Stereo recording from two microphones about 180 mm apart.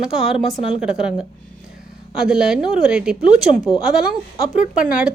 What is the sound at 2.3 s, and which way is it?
Speech, 5° right (ahead or behind).